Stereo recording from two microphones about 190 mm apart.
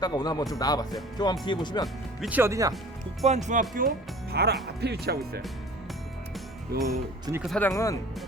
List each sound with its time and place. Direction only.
0.0 s speech: 20° left (ahead or behind)
2.2 s speech: 10° right (ahead or behind)
3.2 s speech: 40° right (ahead or behind); by 5.4 s 55° right (ahead or behind)
6.8 s speech: 15° right (ahead or behind)
7.4 s speech: 5° left (ahead or behind)
7.7 s speech: 15° left (ahead or behind)